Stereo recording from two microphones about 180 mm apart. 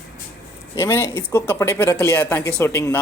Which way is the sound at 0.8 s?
15° left (ahead or behind).